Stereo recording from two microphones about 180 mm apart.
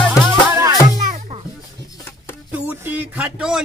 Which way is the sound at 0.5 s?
15° right (ahead or behind).